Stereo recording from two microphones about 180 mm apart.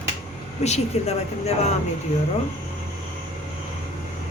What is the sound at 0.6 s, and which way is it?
A woman's voice, 35° left (ahead or behind).